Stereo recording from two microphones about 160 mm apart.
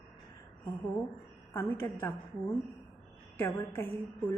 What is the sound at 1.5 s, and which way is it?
Speech, 15° left (ahead or behind).